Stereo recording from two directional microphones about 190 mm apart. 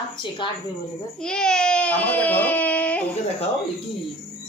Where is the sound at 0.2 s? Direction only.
25° left (ahead or behind).